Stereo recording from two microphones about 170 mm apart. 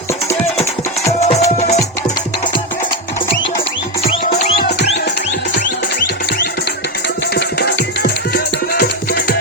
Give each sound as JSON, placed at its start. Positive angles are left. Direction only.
{"t": 0.3, "sound": "music", "side_deg": 15}
{"t": 1.2, "sound": "music", "side_deg": 40}
{"t": 5.5, "sound": "music", "side_deg": 50}
{"t": 7.3, "sound": "music", "side_deg": 75}